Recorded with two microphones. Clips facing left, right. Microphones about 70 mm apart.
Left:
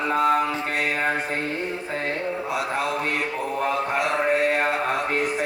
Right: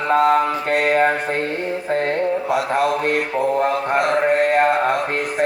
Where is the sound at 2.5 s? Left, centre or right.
Right.